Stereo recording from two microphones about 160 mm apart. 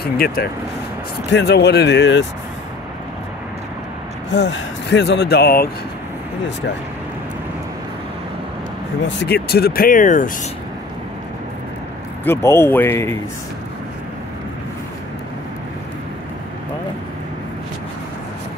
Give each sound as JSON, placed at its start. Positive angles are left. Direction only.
{"t": 0.0, "sound": "speech", "side_deg": 75}
{"t": 1.3, "sound": "speech", "side_deg": 90}
{"t": 4.3, "sound": "speech", "side_deg": 90}
{"t": 9.2, "sound": "speech", "side_deg": 80}
{"t": 12.3, "sound": "speech", "side_deg": 15}